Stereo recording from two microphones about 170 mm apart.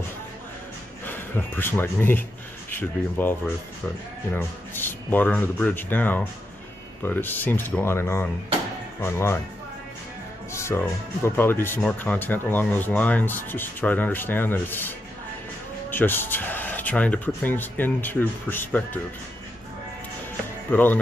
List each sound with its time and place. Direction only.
1.0 s speech: 10° left (ahead or behind)
10.5 s music: 15° left (ahead or behind)
11.2 s speech: 15° left (ahead or behind)
20.7 s speech: 10° left (ahead or behind)